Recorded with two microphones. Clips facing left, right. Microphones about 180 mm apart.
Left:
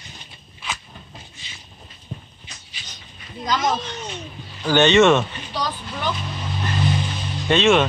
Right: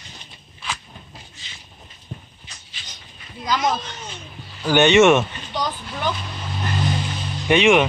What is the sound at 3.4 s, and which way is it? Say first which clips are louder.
Speech: even; 10° right (ahead or behind).